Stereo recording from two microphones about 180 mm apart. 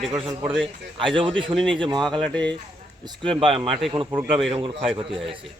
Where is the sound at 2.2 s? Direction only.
5° left (ahead or behind).